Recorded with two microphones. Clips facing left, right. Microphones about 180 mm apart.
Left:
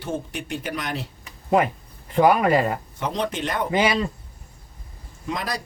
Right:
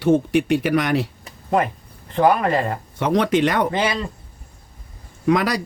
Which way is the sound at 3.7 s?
10° left (ahead or behind).